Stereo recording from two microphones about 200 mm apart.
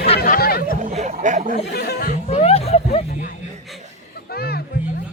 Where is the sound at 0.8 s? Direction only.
35° right (ahead or behind).